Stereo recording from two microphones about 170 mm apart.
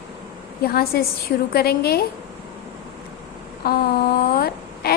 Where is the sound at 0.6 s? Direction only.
65° left (ahead or behind).